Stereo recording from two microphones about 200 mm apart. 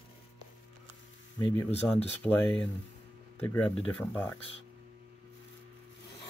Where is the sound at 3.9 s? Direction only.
5° left (ahead or behind).